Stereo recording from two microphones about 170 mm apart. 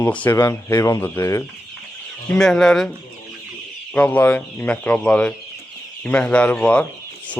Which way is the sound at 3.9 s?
10° left (ahead or behind).